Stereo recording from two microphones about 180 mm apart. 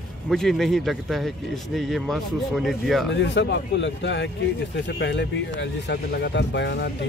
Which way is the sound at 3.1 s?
80° left.